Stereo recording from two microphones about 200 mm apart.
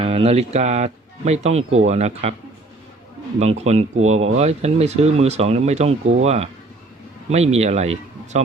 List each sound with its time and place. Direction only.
0.0 s speech: 30° right (ahead or behind)
3.3 s speech: 35° right (ahead or behind)